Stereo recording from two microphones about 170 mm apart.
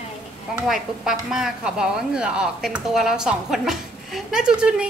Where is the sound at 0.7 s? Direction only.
5° right (ahead or behind).